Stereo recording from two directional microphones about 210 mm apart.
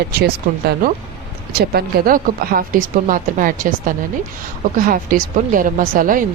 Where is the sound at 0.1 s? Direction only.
50° right (ahead or behind).